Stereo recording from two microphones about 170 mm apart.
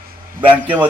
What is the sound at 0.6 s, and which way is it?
Speech, 10° right (ahead or behind).